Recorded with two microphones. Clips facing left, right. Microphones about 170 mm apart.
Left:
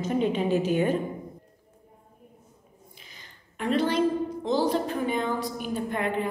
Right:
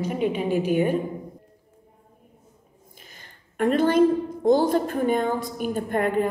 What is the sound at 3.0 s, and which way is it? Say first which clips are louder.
A woman's voice: right 2 dB; 50° right (ahead or behind).